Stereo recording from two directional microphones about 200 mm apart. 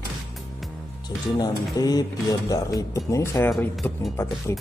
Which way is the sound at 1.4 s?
20° left (ahead or behind).